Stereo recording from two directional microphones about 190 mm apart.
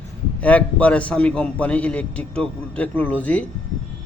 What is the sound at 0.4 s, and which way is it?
A man's voice, 5° left (ahead or behind).